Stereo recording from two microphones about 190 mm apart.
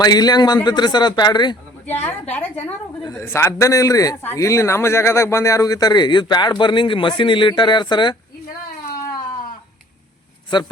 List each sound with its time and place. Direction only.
0.0 s a man's voice: 20° left (ahead or behind)
1.9 s a woman's voice: 10° left (ahead or behind); by 8.1 s 25° left (ahead or behind)
10.5 s a man's voice: 25° left (ahead or behind)